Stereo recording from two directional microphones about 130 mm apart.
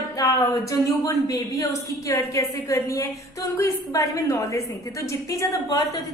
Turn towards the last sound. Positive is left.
turn(degrees=25)  # may be behind; listen again after turning